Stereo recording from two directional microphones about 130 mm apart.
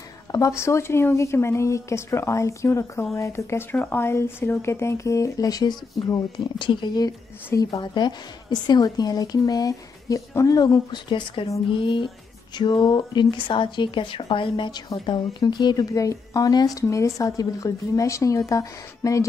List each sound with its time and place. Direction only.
0.3 s speech: 25° left (ahead or behind)
7.4 s speech: 25° left (ahead or behind)
11.7 s a sound: 40° left (ahead or behind)
12.5 s speech: 35° left (ahead or behind)